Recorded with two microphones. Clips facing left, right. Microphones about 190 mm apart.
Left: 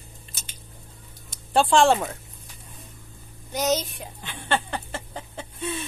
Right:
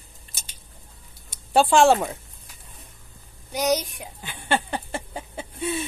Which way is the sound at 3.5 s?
10° right (ahead or behind).